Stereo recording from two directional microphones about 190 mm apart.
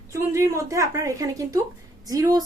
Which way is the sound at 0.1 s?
15° right (ahead or behind).